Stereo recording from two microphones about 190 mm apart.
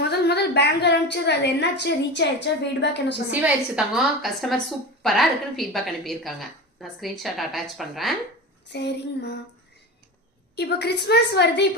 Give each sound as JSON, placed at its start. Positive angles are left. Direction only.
{"t": 0.0, "sound": "a woman's voice", "side_deg": 60}
{"t": 3.4, "sound": "a woman's voice", "side_deg": -5}
{"t": 8.7, "sound": "a woman's voice", "side_deg": 60}
{"t": 10.5, "sound": "a woman's voice", "side_deg": 60}